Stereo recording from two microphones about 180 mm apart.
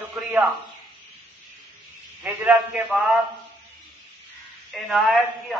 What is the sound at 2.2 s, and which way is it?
Speech, 5° right (ahead or behind).